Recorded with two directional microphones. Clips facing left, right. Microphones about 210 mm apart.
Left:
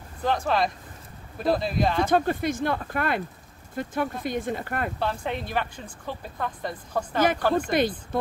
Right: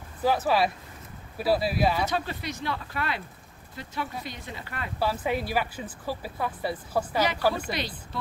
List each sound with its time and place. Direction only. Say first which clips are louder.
0.2 s a woman's voice: right 1 dB; 5° right (ahead or behind)
2.0 s speech: left 8 dB; 50° left (ahead or behind)
4.9 s a woman's voice: right 1 dB; 5° right (ahead or behind)
7.2 s speech: left 6 dB; 50° left (ahead or behind)
7.4 s a woman's voice: left 2 dB; 5° right (ahead or behind)
8.1 s speech: left 8 dB; 50° left (ahead or behind)